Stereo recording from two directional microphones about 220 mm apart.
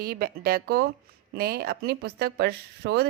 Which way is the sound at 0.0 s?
45° right (ahead or behind).